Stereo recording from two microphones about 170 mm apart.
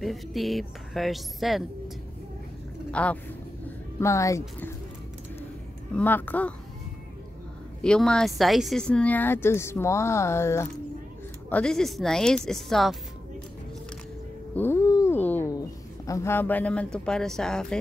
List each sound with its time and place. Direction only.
0.0 s speech: centre (ahead or behind)
2.9 s speech: 10° left (ahead or behind)
5.9 s speech: 10° left (ahead or behind)
7.8 s speech: 5° left (ahead or behind)
14.5 s cat: 15° left (ahead or behind)
16.1 s speech: 15° left (ahead or behind)